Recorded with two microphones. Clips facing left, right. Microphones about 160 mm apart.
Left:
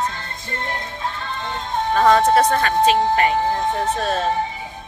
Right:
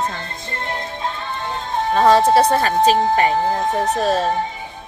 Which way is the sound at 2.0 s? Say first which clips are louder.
Right 2 dB; 30° right (ahead or behind).